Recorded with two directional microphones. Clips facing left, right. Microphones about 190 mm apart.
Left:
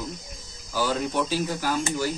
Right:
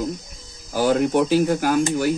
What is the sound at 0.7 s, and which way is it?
Speech, 60° right (ahead or behind).